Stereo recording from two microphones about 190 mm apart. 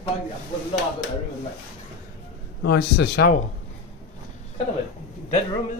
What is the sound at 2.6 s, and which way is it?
Speech, 60° left (ahead or behind).